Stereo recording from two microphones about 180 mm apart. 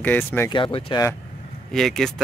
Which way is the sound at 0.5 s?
25° left (ahead or behind).